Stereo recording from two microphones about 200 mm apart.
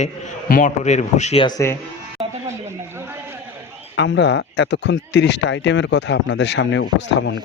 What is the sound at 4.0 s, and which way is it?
Speech, 60° left (ahead or behind).